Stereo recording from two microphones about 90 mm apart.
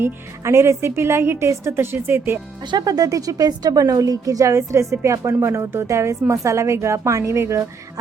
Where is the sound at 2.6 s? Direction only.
50° right (ahead or behind).